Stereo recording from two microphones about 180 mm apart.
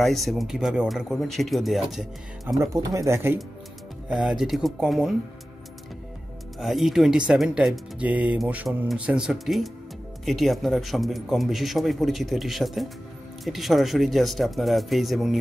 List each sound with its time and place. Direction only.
0.0 s speech: centre (ahead or behind)
2.6 s speech: 15° right (ahead or behind)
4.2 s speech: centre (ahead or behind)
6.6 s speech: centre (ahead or behind)